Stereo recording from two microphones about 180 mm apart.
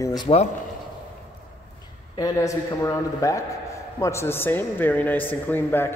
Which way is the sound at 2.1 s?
20° left (ahead or behind).